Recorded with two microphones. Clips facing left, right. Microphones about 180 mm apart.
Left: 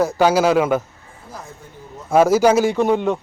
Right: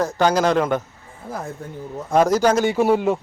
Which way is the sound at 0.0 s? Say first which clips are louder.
Left 3 dB; 10° left (ahead or behind).